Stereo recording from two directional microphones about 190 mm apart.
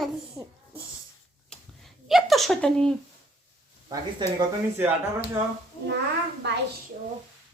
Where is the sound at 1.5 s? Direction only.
Centre (ahead or behind).